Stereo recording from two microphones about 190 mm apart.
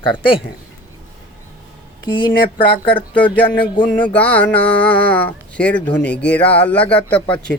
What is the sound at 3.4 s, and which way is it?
Speech, 30° left (ahead or behind).